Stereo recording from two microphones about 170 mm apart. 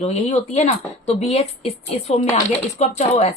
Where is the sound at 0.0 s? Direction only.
40° left (ahead or behind).